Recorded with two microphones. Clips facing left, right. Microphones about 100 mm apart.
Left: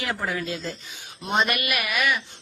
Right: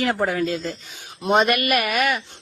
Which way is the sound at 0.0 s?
50° right (ahead or behind).